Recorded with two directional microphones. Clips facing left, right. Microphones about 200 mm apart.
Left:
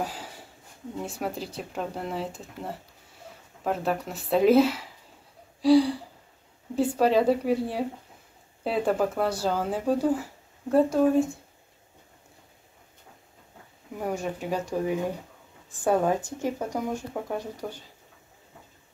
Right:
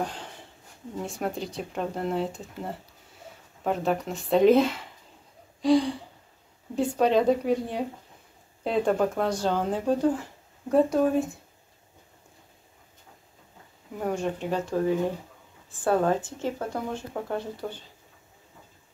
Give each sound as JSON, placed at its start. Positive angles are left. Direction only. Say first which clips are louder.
{"t": 0.0, "sound": "speech", "louder": "right 1 dB", "side_deg": 5}
{"t": 13.9, "sound": "speech", "louder": "right 2 dB", "side_deg": 5}